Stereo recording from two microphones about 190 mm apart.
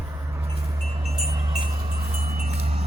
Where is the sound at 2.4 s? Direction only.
35° right (ahead or behind).